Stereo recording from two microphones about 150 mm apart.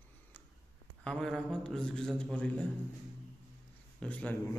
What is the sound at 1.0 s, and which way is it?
A man's voice, 5° left (ahead or behind).